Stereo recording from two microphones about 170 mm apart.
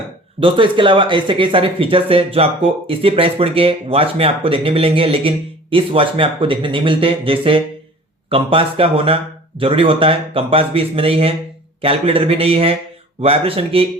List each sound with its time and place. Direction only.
0.3 s speech: 30° right (ahead or behind)